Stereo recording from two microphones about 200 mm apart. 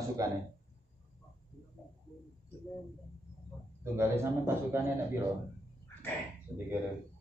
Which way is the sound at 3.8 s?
15° right (ahead or behind).